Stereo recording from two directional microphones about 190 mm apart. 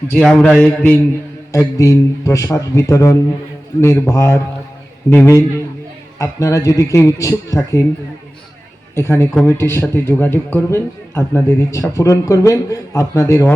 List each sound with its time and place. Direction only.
0.1 s a man's voice: 10° left (ahead or behind)
9.0 s a man's voice: 15° left (ahead or behind)